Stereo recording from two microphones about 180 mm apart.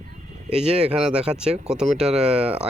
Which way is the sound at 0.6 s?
35° right (ahead or behind).